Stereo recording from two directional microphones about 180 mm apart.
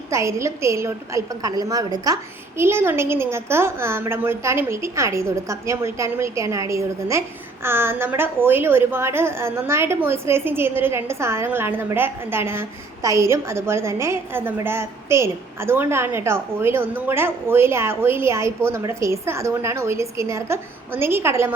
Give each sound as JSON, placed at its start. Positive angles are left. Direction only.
{"t": 0.1, "sound": "a woman's voice", "side_deg": -15}